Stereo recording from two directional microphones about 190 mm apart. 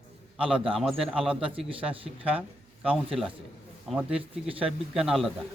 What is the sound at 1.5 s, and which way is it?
Speech, 30° right (ahead or behind).